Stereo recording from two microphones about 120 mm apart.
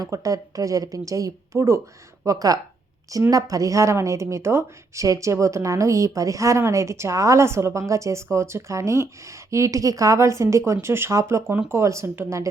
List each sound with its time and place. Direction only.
0.0 s a woman's voice: 30° right (ahead or behind)